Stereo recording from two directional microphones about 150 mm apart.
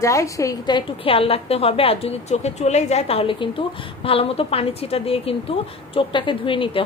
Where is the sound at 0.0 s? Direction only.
20° left (ahead or behind).